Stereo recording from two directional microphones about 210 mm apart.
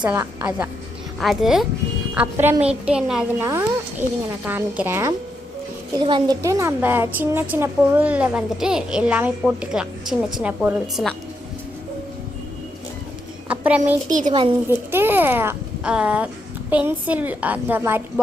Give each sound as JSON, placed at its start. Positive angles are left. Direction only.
{"t": 0.0, "sound": "a woman's voice", "side_deg": -10}
{"t": 1.2, "sound": "a woman's voice", "side_deg": 0}
{"t": 6.0, "sound": "a woman's voice", "side_deg": -20}
{"t": 13.5, "sound": "a sound", "side_deg": -5}
{"t": 14.1, "sound": "a woman's voice", "side_deg": -35}
{"t": 14.7, "sound": "a woman's voice", "side_deg": -10}